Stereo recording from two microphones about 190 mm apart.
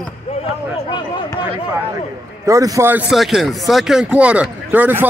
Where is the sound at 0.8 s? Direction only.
25° left (ahead or behind).